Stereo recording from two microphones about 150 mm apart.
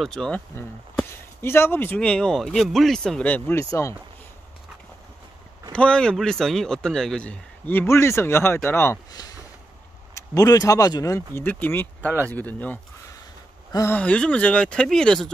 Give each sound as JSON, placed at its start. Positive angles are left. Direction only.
{"t": 0.0, "sound": "speech", "side_deg": 5}
{"t": 1.4, "sound": "speech", "side_deg": 15}
{"t": 5.7, "sound": "speech", "side_deg": 5}
{"t": 13.7, "sound": "speech", "side_deg": 20}
{"t": 13.9, "sound": "speech", "side_deg": 10}